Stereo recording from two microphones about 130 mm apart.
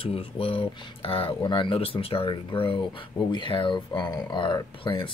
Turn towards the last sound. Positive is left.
turn(degrees=40)  # may be behind; listen again after turning